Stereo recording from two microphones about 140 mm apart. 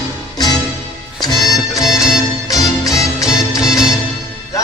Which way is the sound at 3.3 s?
25° left (ahead or behind).